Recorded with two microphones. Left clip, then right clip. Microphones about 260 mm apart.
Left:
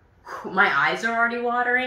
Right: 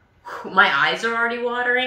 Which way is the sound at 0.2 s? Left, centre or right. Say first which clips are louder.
Right 4 dB; right.